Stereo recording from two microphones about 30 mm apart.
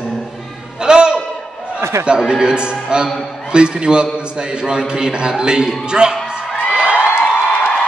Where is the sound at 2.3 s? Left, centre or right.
Right.